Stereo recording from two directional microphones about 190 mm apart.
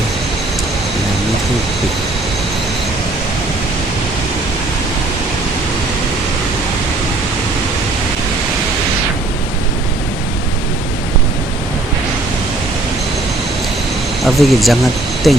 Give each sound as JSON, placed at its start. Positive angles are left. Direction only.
{"t": 14.3, "sound": "speech", "side_deg": 0}